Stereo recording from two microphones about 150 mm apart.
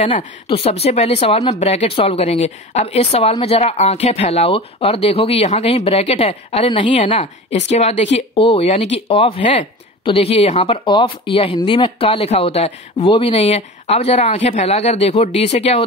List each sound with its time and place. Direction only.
0.0 s speech: 50° left (ahead or behind)